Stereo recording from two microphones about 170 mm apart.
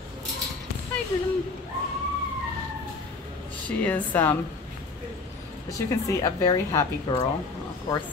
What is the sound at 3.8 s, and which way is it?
Speech, 10° left (ahead or behind).